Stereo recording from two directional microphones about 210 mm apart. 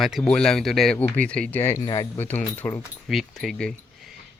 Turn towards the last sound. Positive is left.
turn(degrees=0)  # may be behind; listen again after turning